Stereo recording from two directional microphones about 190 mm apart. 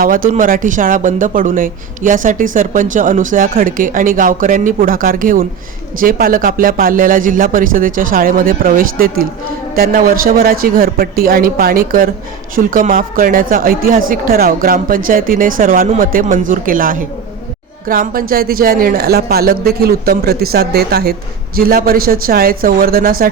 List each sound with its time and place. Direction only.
0.0 s speech: 45° right (ahead or behind)